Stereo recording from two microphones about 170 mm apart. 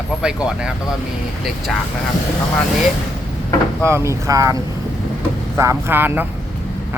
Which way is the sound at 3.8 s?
15° right (ahead or behind).